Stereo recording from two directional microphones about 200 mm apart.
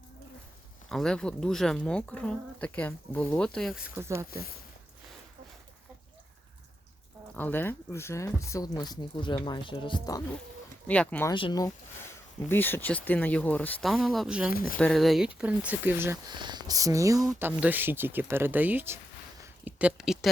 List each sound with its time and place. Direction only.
0.9 s speech: 5° left (ahead or behind); by 4.3 s 15° right (ahead or behind)
4.3 s speech: 50° left (ahead or behind)
7.3 s speech: 10° left (ahead or behind)
10.8 s speech: 5° left (ahead or behind)
11.3 s speech: 20° left (ahead or behind)
12.5 s speech: 10° left (ahead or behind); by 14.5 s 5° right (ahead or behind)
14.5 s speech: 45° left (ahead or behind)
14.8 s speech: 5° left (ahead or behind)
16.3 s speech: 20° right (ahead or behind)
19.4 s a sound: 5° right (ahead or behind)